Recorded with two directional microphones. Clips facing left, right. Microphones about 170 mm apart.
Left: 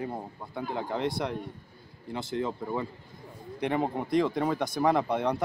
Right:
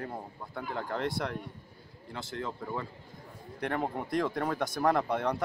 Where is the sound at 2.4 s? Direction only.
15° left (ahead or behind).